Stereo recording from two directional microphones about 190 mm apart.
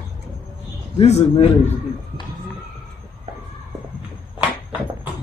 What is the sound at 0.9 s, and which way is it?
Speech, 35° left (ahead or behind).